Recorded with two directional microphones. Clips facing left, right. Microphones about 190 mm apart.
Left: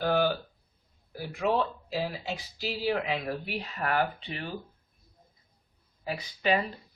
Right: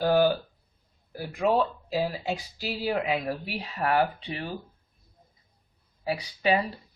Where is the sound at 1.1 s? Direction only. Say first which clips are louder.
Right 3 dB; 40° right (ahead or behind).